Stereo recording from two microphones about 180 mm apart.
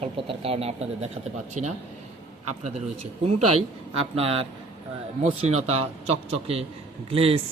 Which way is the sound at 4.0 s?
30° right (ahead or behind).